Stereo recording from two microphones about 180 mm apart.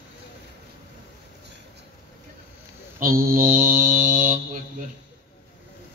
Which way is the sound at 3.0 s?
50° right (ahead or behind).